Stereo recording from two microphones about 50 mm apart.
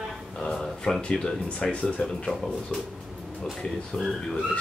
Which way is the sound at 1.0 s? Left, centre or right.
Centre.